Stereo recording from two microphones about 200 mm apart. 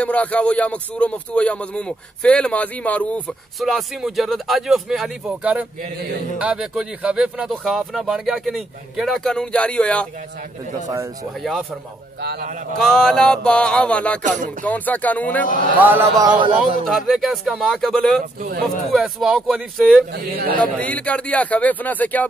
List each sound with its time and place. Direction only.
0.0 s speech: 5° left (ahead or behind)
12.2 s a man's voice: 55° right (ahead or behind)
12.7 s speech: 5° left (ahead or behind)
15.8 s a man's voice: 10° right (ahead or behind)
16.5 s speech: centre (ahead or behind)